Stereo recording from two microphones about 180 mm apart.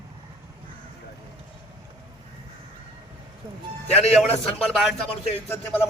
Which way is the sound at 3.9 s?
35° left (ahead or behind).